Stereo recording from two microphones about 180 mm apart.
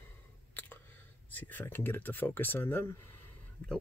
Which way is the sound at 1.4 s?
10° left (ahead or behind).